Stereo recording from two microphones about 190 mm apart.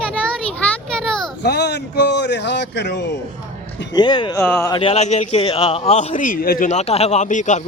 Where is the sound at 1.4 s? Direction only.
60° left (ahead or behind).